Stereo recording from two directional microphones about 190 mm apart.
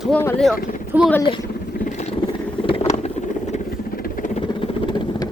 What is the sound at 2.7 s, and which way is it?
Boat, 25° left (ahead or behind).